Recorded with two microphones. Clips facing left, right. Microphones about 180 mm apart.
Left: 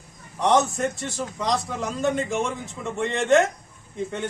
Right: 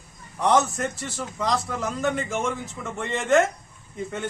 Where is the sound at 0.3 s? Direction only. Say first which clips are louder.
Left 1 dB; centre (ahead or behind).